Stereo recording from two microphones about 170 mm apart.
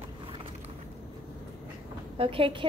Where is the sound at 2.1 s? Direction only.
35° right (ahead or behind).